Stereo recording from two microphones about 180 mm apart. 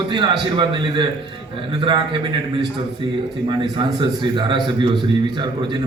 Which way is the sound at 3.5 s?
25° right (ahead or behind).